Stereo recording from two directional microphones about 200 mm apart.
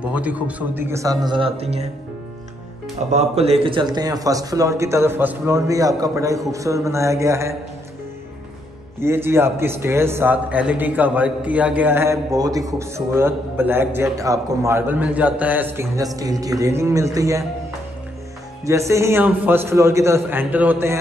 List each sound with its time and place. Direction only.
0.0 s a man's voice: 5° right (ahead or behind); by 1.9 s 30° right (ahead or behind)
3.1 s a man's voice: 35° right (ahead or behind); by 7.5 s 15° right (ahead or behind)
9.0 s a man's voice: 10° right (ahead or behind)
18.7 s a man's voice: 15° right (ahead or behind)